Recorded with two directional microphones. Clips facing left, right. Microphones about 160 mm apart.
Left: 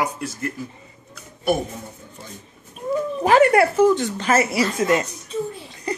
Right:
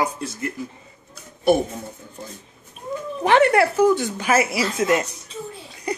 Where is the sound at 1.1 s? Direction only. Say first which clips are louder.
Right 4 dB; 30° right (ahead or behind).